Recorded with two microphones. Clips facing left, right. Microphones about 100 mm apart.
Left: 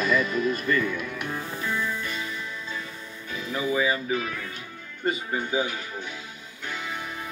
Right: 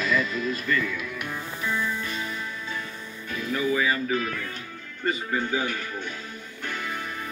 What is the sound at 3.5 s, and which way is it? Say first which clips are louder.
Speech: even; 20° left (ahead or behind).